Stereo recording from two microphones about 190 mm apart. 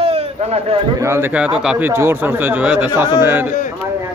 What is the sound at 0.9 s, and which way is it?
Speech, 15° right (ahead or behind).